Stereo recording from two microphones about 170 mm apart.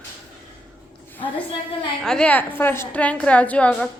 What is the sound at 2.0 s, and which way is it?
A woman's voice, 5° left (ahead or behind).